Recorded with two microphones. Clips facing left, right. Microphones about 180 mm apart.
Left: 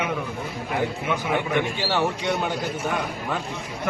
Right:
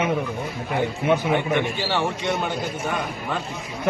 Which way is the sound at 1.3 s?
5° left (ahead or behind).